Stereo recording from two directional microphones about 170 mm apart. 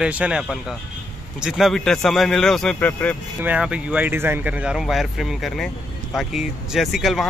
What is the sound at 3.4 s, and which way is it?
Speech, 10° right (ahead or behind).